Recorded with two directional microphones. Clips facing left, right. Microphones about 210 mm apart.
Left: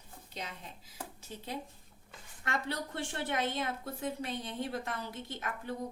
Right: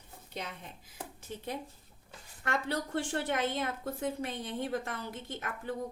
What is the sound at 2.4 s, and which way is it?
A woman's voice, 50° right (ahead or behind).